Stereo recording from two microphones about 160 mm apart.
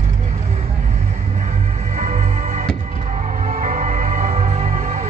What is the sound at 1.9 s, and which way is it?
Music, 45° right (ahead or behind).